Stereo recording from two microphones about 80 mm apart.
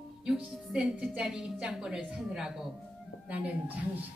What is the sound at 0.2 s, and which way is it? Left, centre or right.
A woman's voice, centre.